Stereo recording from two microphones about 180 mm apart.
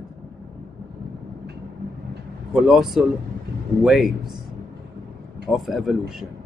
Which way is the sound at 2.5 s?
Centre (ahead or behind).